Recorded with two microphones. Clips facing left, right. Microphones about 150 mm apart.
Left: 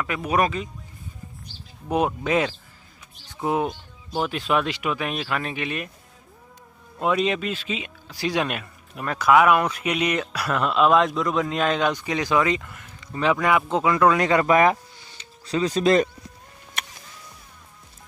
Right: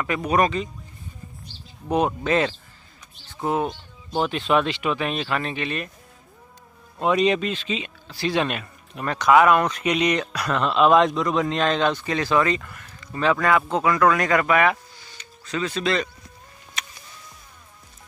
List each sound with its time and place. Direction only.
0.0 s speech: 5° left (ahead or behind)
1.9 s speech: 5° left (ahead or behind)
7.0 s speech: centre (ahead or behind); by 14.8 s 35° left (ahead or behind)
15.0 s a sound: 25° left (ahead or behind); by 16.1 s 45° left (ahead or behind)
16.8 s music: 60° left (ahead or behind)